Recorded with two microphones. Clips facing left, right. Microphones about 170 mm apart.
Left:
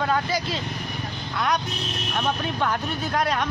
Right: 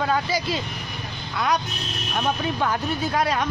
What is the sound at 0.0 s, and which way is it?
Speech, 5° right (ahead or behind).